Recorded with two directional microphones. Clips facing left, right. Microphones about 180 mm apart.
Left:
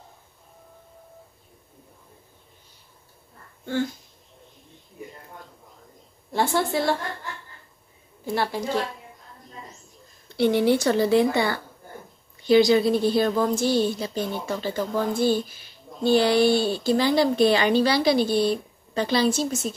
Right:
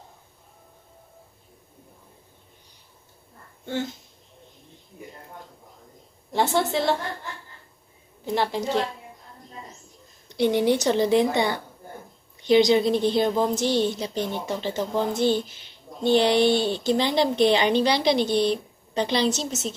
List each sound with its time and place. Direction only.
3.6 s speech: 20° right (ahead or behind)
6.3 s a woman's voice: 20° right (ahead or behind)
8.4 s a woman's voice: 20° right (ahead or behind)
10.2 s a woman's voice: 15° right (ahead or behind)